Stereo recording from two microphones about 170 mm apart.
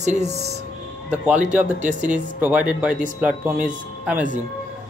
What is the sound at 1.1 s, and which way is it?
Speech, 10° right (ahead or behind).